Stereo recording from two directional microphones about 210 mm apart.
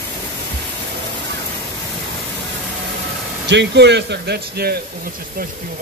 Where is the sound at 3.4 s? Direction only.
55° right (ahead or behind).